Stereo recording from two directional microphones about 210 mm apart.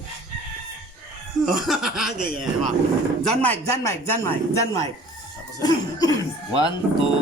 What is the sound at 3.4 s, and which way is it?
A man's voice, 10° left (ahead or behind).